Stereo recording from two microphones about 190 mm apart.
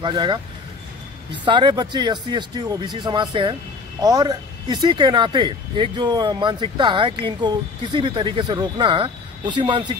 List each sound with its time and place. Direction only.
0.0 s speech: 25° right (ahead or behind)